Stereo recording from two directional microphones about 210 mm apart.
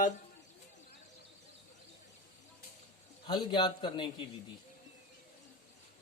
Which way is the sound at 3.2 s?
20° left (ahead or behind).